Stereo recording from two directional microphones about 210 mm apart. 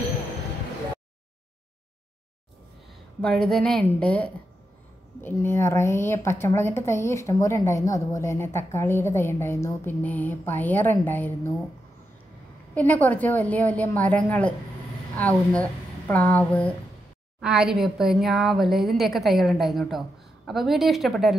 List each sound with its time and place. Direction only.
3.2 s a woman's voice: 5° left (ahead or behind)
12.7 s a woman's voice: 10° left (ahead or behind)
17.4 s a woman's voice: 5° right (ahead or behind)